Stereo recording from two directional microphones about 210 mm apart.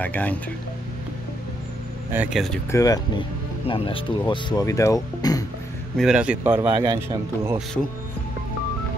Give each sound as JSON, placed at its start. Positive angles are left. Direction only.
{"t": 0.0, "sound": "speech", "side_deg": 5}
{"t": 2.1, "sound": "a man's voice", "side_deg": -5}
{"t": 2.7, "sound": "speech", "side_deg": 15}
{"t": 5.9, "sound": "a man's voice", "side_deg": -5}
{"t": 6.6, "sound": "speech", "side_deg": -20}